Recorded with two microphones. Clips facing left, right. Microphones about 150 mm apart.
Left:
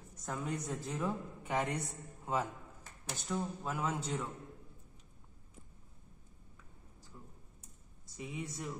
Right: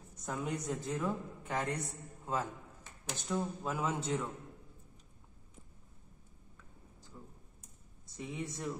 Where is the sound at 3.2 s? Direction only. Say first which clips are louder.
Right 2 dB; centre (ahead or behind).